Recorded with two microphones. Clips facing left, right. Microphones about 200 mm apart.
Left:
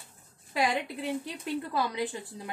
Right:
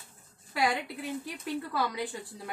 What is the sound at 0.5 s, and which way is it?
A woman's voice, 20° left (ahead or behind).